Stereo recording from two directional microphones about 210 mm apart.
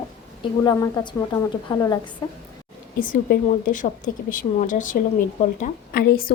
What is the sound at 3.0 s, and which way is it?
A woman's voice, 45° left (ahead or behind).